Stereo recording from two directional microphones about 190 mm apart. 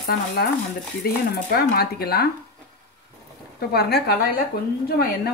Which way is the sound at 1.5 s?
55° left (ahead or behind).